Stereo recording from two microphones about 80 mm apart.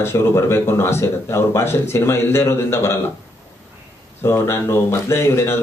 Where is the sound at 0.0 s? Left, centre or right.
Left.